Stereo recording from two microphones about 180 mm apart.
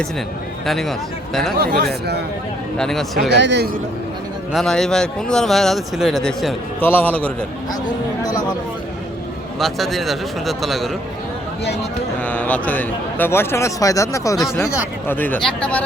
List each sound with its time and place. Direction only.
0.6 s speech: centre (ahead or behind)
1.5 s speech: 60° right (ahead or behind)
2.7 s speech: 5° left (ahead or behind)
3.2 s speech: 70° right (ahead or behind)
4.5 s a man's voice: centre (ahead or behind)
9.6 s speech: centre (ahead or behind)
12.2 s a man's voice: 10° left (ahead or behind)